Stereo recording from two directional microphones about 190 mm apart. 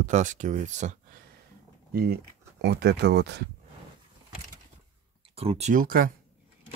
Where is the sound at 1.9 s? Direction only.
55° right (ahead or behind).